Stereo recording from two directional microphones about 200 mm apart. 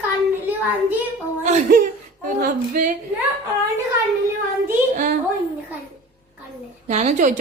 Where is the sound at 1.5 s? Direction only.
35° right (ahead or behind).